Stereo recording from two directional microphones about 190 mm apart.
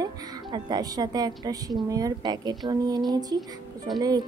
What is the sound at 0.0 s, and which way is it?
A woman's voice, 20° right (ahead or behind).